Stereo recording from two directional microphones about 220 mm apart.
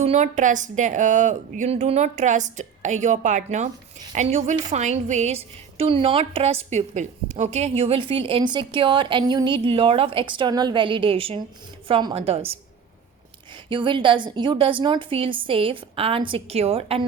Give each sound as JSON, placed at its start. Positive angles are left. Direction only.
{"t": 0.0, "sound": "a woman's voice", "side_deg": -30}